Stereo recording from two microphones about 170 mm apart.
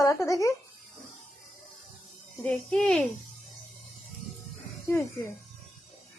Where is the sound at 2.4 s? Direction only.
5° left (ahead or behind).